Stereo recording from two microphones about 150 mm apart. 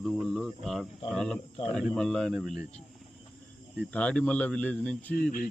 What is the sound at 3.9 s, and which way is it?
Speech, 5° left (ahead or behind).